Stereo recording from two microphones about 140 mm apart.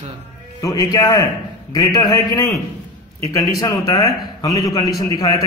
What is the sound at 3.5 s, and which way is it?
A man's voice, 25° left (ahead or behind).